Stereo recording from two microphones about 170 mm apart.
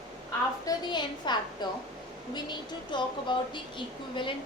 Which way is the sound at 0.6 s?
25° left (ahead or behind).